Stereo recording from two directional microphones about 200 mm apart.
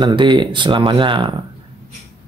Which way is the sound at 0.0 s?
25° right (ahead or behind).